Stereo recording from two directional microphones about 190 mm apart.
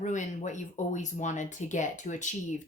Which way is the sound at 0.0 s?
40° left (ahead or behind).